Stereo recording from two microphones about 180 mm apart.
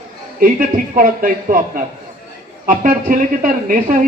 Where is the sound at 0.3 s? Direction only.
50° right (ahead or behind).